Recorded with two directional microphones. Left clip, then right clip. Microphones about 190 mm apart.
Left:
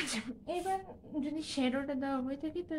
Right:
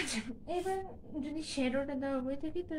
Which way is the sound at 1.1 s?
35° left (ahead or behind).